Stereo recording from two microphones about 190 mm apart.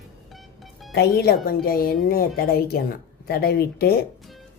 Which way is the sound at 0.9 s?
60° left (ahead or behind).